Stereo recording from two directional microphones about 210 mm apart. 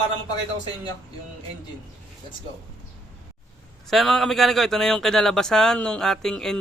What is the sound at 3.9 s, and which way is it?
Speech, centre (ahead or behind).